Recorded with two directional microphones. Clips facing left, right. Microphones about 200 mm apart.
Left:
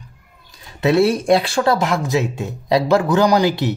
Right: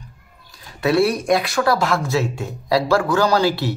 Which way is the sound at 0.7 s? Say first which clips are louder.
Left 2 dB; 20° left (ahead or behind).